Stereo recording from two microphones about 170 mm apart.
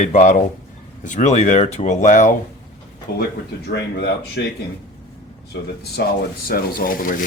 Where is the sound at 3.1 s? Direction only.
75° left (ahead or behind); by 4.5 s 90° left.